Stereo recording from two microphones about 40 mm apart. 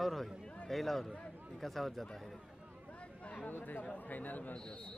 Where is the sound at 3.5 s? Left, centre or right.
Left.